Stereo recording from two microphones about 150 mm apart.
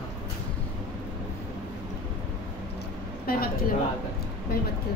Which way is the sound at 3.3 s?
85° left.